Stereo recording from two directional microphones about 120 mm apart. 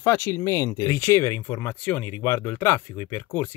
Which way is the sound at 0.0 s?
20° left (ahead or behind).